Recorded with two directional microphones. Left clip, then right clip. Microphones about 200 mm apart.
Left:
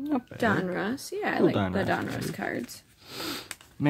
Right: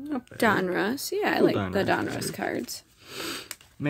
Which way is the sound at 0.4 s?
55° right (ahead or behind).